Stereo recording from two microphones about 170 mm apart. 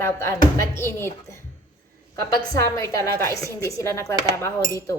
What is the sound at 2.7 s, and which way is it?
Speech, 20° left (ahead or behind).